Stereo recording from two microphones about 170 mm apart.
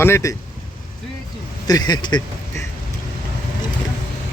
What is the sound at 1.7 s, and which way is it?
Speech, 25° left (ahead or behind).